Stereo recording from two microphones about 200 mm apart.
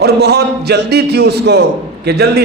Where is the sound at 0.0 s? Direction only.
55° right (ahead or behind).